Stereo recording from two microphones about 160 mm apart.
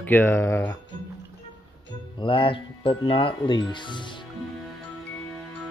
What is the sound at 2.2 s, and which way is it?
Speech, 35° left (ahead or behind).